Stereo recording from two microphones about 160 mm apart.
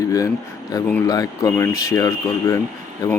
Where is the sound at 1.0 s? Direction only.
20° left (ahead or behind).